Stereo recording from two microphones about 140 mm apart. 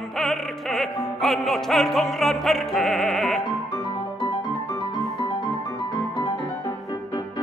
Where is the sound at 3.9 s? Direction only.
40° left (ahead or behind).